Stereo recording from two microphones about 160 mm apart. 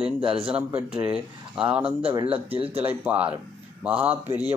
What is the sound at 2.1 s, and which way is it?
Speech, 35° right (ahead or behind).